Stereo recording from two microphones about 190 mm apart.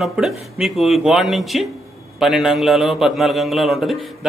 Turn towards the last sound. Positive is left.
turn(degrees=0)  # may be behind; listen again after turning